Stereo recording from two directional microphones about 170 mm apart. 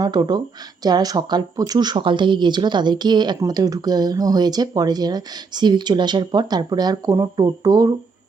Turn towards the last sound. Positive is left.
turn(degrees=-20)  # may be behind; listen again after turning